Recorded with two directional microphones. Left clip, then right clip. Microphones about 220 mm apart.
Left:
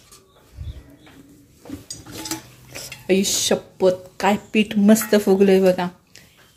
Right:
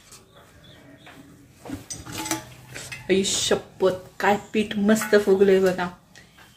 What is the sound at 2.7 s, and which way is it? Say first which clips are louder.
A woman's voice: left 3 dB; 35° left (ahead or behind).